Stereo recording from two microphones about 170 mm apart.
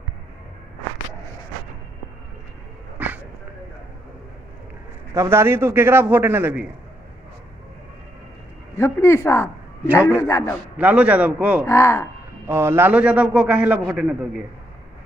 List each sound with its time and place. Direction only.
5.1 s a man's voice: 15° right (ahead or behind)
8.7 s speech: 15° left (ahead or behind)
10.8 s a man's voice: 10° right (ahead or behind)
11.6 s speech: 15° left (ahead or behind)
12.4 s a man's voice: 15° right (ahead or behind)